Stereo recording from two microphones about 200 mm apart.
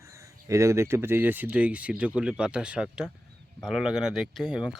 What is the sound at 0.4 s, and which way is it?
Speech, 15° right (ahead or behind).